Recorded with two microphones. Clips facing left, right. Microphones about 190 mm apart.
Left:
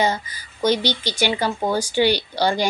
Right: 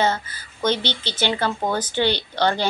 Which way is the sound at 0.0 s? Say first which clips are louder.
Even; 15° left (ahead or behind).